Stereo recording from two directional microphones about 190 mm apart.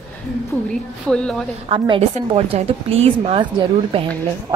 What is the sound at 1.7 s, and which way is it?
A woman's voice, 25° right (ahead or behind).